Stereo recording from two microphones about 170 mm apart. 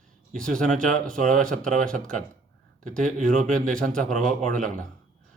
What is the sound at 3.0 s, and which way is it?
Speech, 50° right (ahead or behind).